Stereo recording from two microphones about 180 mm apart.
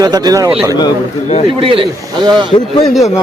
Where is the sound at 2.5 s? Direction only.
35° left (ahead or behind).